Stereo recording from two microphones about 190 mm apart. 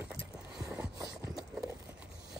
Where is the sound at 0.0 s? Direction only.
5° right (ahead or behind).